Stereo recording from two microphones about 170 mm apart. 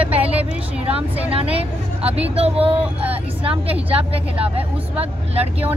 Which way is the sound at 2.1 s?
35° right (ahead or behind).